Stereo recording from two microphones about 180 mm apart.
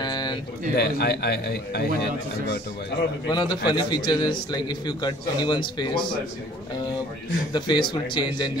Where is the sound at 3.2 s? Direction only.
25° left (ahead or behind).